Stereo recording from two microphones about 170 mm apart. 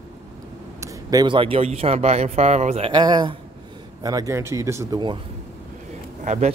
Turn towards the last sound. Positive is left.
turn(degrees=-45)  # may be behind; listen again after turning